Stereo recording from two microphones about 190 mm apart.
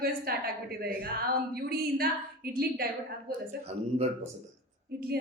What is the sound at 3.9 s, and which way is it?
Speech, 35° right (ahead or behind).